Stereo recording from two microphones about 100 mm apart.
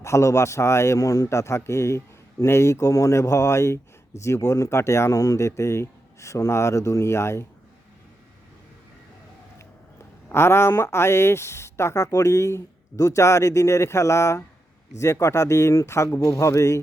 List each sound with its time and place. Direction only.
0.0 s speech: 30° left (ahead or behind)
10.2 s speech: 25° left (ahead or behind)